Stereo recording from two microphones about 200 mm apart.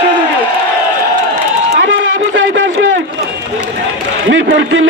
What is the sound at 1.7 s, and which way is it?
Run, 65° right (ahead or behind).